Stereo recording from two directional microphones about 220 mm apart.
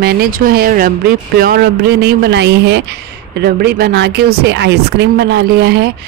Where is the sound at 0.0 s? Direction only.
40° right (ahead or behind).